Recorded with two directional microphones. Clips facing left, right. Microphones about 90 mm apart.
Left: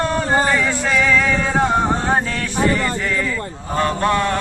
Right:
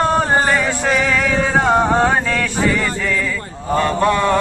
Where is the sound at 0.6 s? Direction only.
60° right (ahead or behind).